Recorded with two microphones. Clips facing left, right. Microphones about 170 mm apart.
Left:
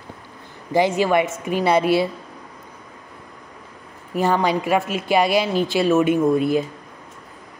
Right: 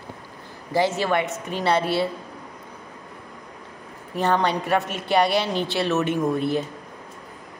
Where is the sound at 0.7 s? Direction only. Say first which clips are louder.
Left 4 dB; 15° left (ahead or behind).